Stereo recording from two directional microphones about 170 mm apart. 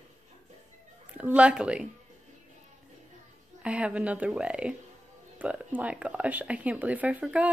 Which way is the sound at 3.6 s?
5° right (ahead or behind).